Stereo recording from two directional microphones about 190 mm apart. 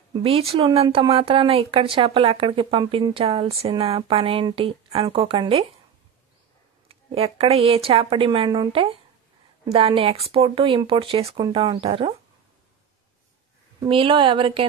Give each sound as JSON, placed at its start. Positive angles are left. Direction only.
{"t": 0.1, "sound": "speech", "side_deg": -30}
{"t": 6.9, "sound": "speech", "side_deg": -30}
{"t": 13.7, "sound": "speech", "side_deg": -25}